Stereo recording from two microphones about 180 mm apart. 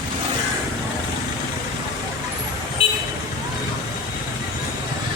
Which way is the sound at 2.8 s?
30° left (ahead or behind).